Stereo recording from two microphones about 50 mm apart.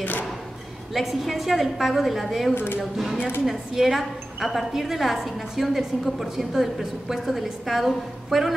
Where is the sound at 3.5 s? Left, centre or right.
Centre.